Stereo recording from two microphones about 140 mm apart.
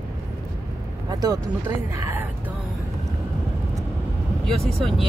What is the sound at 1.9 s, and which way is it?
Speech, 20° right (ahead or behind).